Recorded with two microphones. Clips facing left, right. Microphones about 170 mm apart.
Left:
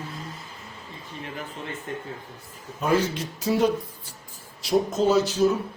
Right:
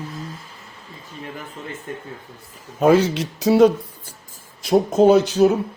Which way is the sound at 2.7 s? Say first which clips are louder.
Right 8 dB; 80° right.